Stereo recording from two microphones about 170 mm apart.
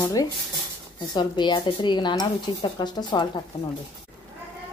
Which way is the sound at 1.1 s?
25° left (ahead or behind).